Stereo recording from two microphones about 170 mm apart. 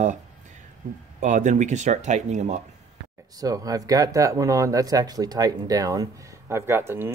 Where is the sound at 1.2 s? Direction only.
45° right (ahead or behind).